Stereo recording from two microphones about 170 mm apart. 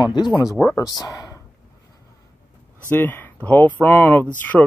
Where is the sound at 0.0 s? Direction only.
25° left (ahead or behind).